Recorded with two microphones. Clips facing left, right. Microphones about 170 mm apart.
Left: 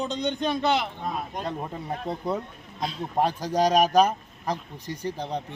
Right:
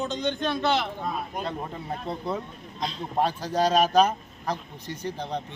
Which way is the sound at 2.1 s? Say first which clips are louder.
Left 2 dB; 15° left (ahead or behind).